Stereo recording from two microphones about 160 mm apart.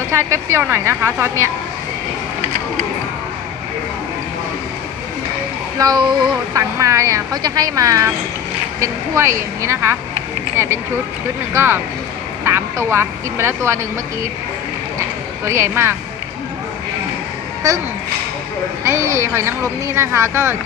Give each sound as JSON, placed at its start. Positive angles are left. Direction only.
{"t": 0.1, "sound": "speech", "side_deg": -15}
{"t": 5.8, "sound": "a woman's voice", "side_deg": -25}
{"t": 11.5, "sound": "speech", "side_deg": -15}
{"t": 15.0, "sound": "a sound", "side_deg": -15}
{"t": 17.6, "sound": "a woman's voice", "side_deg": -20}
{"t": 18.9, "sound": "speech", "side_deg": -20}